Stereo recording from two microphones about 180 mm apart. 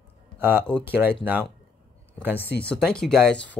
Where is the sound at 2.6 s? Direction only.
5° left (ahead or behind).